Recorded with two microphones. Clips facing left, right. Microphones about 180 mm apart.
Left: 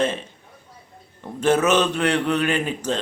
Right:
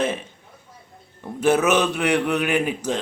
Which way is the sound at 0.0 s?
10° right (ahead or behind).